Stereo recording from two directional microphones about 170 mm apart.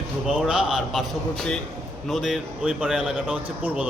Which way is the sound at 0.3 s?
5° right (ahead or behind).